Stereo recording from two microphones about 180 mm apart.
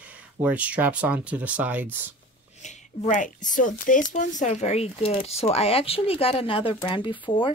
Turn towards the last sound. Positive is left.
turn(degrees=25)  # may be behind; listen again after turning